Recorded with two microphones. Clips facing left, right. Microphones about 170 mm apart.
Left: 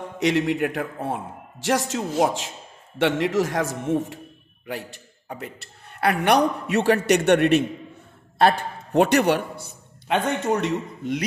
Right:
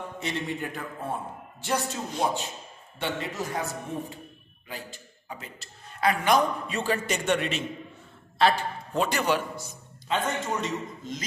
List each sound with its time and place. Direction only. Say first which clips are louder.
0.2 s a man's voice: left 12 dB; 75° left (ahead or behind)
4.6 s a man's voice: left 7 dB; 65° left (ahead or behind)